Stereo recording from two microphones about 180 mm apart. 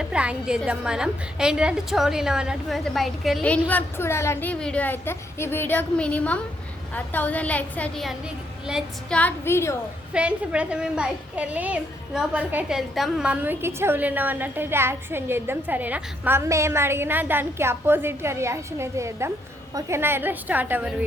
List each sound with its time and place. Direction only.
0.0 s a woman's voice: 5° right (ahead or behind)
9.1 s a woman's voice: 10° left (ahead or behind)
10.1 s a woman's voice: 5° right (ahead or behind)